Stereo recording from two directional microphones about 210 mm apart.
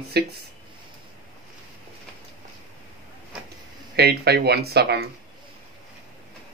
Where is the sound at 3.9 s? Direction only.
50° right (ahead or behind).